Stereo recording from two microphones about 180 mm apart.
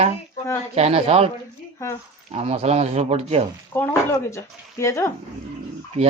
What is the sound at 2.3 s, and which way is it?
Speech, 35° right (ahead or behind).